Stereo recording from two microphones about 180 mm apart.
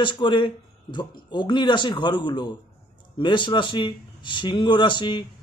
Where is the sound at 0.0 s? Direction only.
25° left (ahead or behind).